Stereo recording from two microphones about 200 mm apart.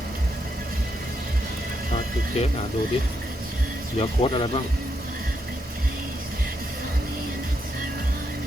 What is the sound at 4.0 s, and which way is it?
Speech, 30° left (ahead or behind).